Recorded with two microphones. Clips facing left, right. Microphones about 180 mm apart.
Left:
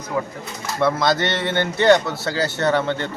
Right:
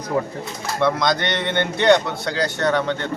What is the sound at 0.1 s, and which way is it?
Speech, 40° right (ahead or behind).